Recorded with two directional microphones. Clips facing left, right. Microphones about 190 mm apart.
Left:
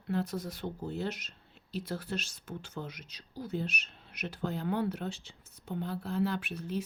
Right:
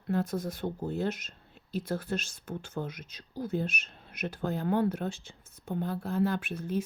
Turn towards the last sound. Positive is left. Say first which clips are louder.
# right 3 dB
turn(degrees=-50)  # may be behind; listen again after turning